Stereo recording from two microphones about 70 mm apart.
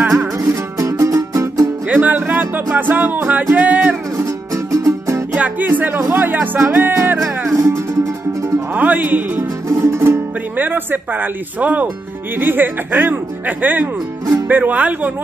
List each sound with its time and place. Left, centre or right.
0.4 s music: right
1.9 s music: right
3.5 s speech: right
4.2 s music: right
5.3 s speech: right
6.1 s music: right
7.5 s music: right
8.7 s speech: right
9.4 s speech: right